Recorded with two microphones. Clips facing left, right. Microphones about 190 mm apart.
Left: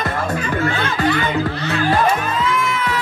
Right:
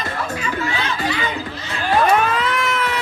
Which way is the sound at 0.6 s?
55° left (ahead or behind).